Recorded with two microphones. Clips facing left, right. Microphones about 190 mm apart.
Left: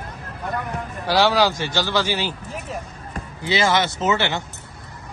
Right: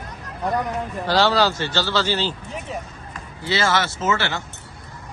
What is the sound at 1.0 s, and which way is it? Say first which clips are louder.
Speech: left 1 dB; 10° left (ahead or behind).